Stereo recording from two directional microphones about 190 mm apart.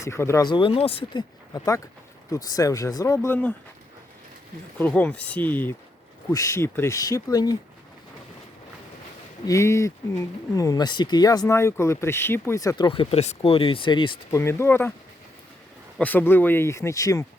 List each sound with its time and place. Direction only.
0.0 s speech: 15° left (ahead or behind)
4.8 s speech: 5° left (ahead or behind)
9.5 s speech: 15° left (ahead or behind)
14.3 s speech: 15° left (ahead or behind)
16.0 s speech: 10° left (ahead or behind)